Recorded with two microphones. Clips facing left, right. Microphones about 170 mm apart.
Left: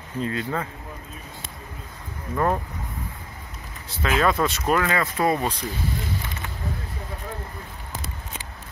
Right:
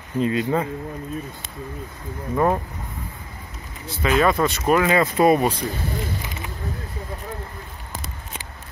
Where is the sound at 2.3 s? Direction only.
10° right (ahead or behind).